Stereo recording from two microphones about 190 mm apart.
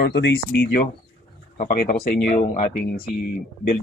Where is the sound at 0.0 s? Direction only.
70° left (ahead or behind); by 2.3 s 55° left (ahead or behind).